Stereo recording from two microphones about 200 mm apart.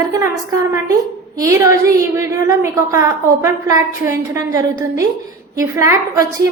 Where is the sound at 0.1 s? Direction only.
15° right (ahead or behind).